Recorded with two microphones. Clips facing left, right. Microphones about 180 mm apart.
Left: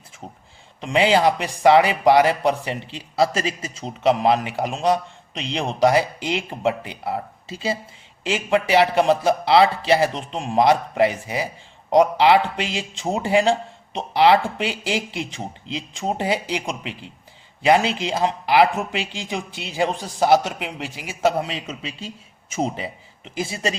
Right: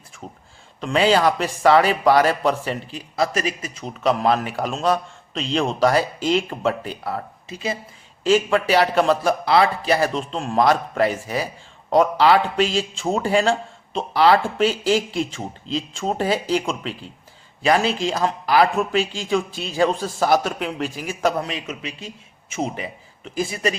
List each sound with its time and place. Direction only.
0.8 s speech: 20° left (ahead or behind)
8.2 s speech: 20° left (ahead or behind)
23.2 s speech: 20° left (ahead or behind)